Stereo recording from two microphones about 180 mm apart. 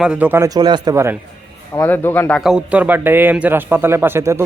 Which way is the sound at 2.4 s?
5° right (ahead or behind).